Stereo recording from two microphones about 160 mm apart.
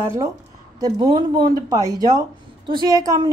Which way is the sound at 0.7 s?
25° right (ahead or behind).